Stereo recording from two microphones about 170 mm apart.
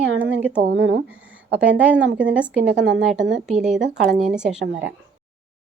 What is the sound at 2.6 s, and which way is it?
Speech, 90° right.